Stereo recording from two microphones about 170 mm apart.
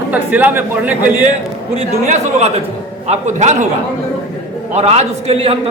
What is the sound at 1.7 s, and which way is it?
A man's voice, 40° right (ahead or behind).